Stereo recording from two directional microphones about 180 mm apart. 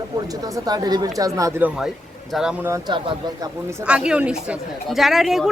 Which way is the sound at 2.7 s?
25° right (ahead or behind).